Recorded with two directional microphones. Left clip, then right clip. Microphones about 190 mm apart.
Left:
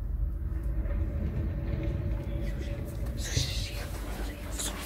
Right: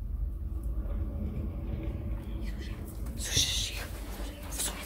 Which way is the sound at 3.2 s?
20° right (ahead or behind).